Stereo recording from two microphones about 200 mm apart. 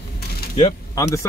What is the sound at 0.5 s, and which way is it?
Speech, 20° left (ahead or behind).